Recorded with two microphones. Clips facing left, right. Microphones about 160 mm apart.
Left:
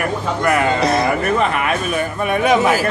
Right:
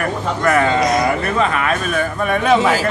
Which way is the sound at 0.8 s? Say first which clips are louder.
Even; 30° left (ahead or behind).